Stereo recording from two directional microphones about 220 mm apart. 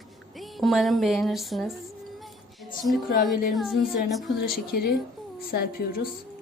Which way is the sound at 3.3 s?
Centre (ahead or behind).